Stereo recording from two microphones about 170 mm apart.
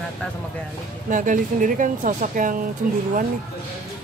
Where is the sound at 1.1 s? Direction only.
50° right (ahead or behind).